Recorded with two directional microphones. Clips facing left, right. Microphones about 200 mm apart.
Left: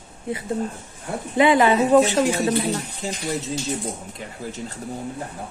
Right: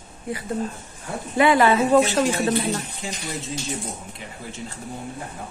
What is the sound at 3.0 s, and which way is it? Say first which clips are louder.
Speech: left 3 dB; 40° left (ahead or behind).